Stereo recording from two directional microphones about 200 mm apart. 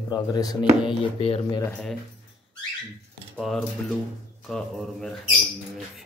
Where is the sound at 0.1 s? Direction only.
20° left (ahead or behind).